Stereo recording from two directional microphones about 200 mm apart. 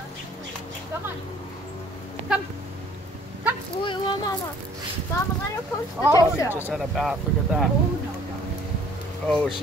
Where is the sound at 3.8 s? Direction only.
25° left (ahead or behind).